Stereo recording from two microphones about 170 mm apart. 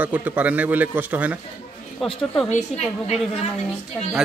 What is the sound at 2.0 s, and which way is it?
Speech, centre (ahead or behind).